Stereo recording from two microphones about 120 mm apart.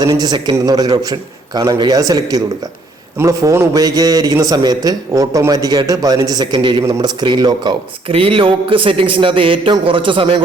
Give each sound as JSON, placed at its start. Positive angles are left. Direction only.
{"t": 0.0, "sound": "a man's voice", "side_deg": -35}
{"t": 8.1, "sound": "a man's voice", "side_deg": -50}